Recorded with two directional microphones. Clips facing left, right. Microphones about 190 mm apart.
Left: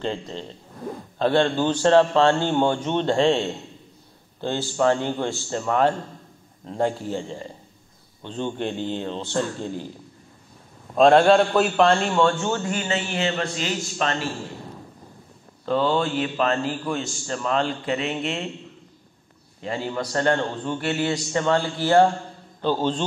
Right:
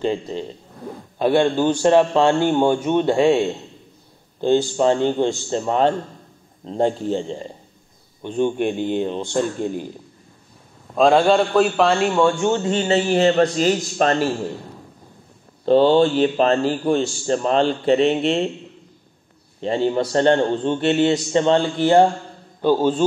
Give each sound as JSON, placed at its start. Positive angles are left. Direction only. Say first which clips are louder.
{"t": 0.0, "sound": "a man's voice", "louder": "right 6 dB", "side_deg": -10}
{"t": 11.0, "sound": "a man's voice", "louder": "even", "side_deg": 0}
{"t": 15.6, "sound": "a man's voice", "louder": "right 8 dB", "side_deg": -30}
{"t": 19.6, "sound": "a man's voice", "louder": "right 8 dB", "side_deg": -25}